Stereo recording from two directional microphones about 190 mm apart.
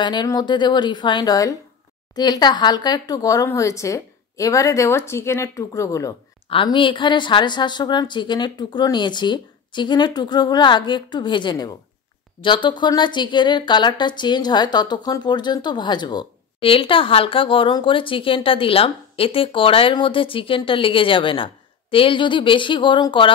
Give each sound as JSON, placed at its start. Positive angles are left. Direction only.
{"t": 0.0, "sound": "speech", "side_deg": 20}